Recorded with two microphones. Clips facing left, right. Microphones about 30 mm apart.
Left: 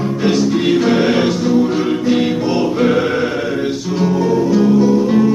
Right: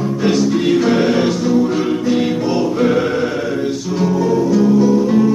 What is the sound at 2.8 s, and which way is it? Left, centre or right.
Choir, centre.